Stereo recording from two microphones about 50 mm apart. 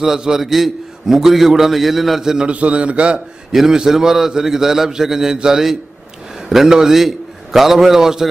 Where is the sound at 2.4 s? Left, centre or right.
Right.